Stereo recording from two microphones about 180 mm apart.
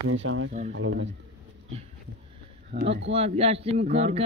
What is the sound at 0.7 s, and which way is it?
Speech, 90° right.